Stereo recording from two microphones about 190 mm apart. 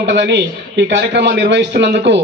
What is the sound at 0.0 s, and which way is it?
A man's voice, 65° right (ahead or behind).